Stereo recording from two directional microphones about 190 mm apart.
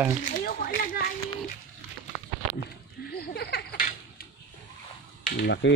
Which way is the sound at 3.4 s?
55° left (ahead or behind).